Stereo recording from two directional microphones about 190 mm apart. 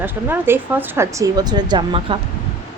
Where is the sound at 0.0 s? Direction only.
10° right (ahead or behind).